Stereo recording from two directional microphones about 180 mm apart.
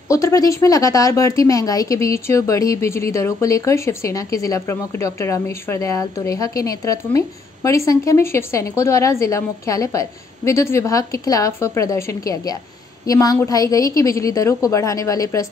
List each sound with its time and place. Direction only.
0.1 s speech: 20° left (ahead or behind)